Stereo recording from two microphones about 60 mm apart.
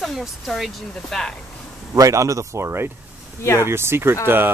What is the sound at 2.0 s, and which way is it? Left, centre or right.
Speech, right.